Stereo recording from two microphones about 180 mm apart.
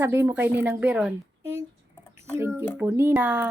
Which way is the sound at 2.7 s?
10° right (ahead or behind).